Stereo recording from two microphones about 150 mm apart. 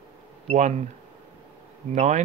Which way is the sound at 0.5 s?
50° right (ahead or behind).